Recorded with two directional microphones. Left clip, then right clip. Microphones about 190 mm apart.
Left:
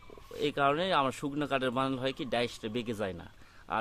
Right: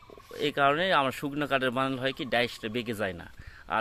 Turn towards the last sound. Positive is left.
turn(degrees=-15)  # may be behind; listen again after turning